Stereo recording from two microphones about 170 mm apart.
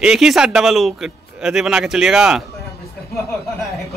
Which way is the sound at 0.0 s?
Centre (ahead or behind).